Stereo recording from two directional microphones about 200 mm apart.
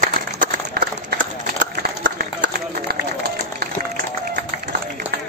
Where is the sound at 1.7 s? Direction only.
55° right (ahead or behind).